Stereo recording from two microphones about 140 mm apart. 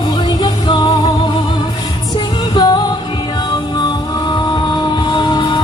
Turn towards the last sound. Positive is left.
turn(degrees=35)  # may be behind; listen again after turning